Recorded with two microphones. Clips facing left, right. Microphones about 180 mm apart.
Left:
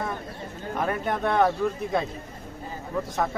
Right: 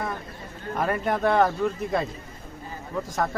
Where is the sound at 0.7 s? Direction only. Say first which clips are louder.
Right 2 dB; centre (ahead or behind).